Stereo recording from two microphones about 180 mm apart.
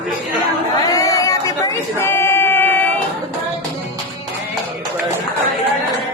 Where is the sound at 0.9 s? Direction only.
20° left (ahead or behind).